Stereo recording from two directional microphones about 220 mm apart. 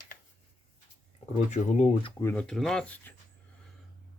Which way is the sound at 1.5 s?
35° left (ahead or behind).